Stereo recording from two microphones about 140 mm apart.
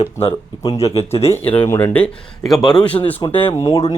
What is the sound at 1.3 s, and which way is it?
Speech, 10° left (ahead or behind).